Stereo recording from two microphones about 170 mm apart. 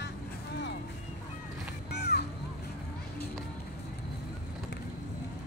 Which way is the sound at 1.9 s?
70° left (ahead or behind).